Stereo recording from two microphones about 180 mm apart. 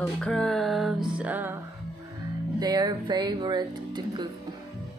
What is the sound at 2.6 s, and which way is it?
Music, 25° right (ahead or behind).